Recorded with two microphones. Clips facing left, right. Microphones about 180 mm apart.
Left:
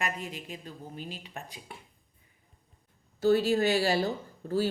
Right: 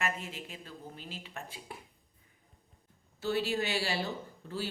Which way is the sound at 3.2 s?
40° left (ahead or behind).